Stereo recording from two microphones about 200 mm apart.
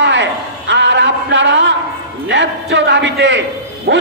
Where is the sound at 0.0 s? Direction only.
65° right (ahead or behind).